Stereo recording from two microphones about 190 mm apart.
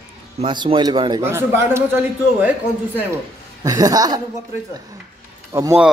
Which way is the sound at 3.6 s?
20° right (ahead or behind).